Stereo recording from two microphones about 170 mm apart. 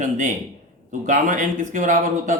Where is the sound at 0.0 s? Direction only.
45° right (ahead or behind).